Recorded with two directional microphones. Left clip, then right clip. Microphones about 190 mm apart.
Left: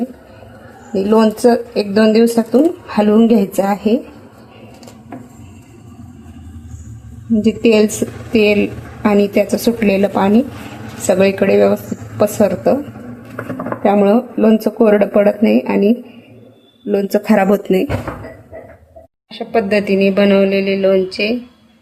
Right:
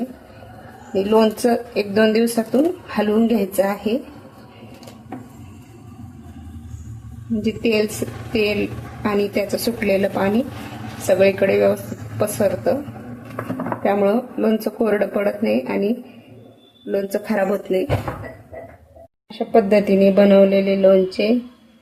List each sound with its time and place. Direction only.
0.9 s speech: 25° left (ahead or behind)
7.4 s a woman's voice: 45° left (ahead or behind)
13.8 s a woman's voice: 40° left (ahead or behind)
19.3 s speech: 20° right (ahead or behind)